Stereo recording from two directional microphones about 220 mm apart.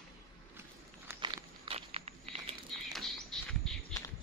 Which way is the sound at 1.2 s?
25° right (ahead or behind).